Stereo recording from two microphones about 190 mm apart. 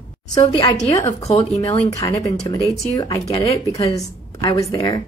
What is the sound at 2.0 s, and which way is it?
Speech, 20° left (ahead or behind).